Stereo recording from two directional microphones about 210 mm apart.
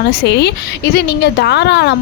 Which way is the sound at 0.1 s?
55° left (ahead or behind).